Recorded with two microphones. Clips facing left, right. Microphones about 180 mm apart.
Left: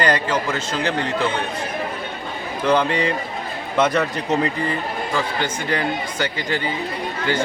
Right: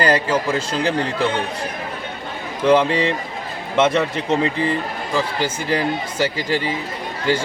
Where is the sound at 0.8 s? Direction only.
30° right (ahead or behind).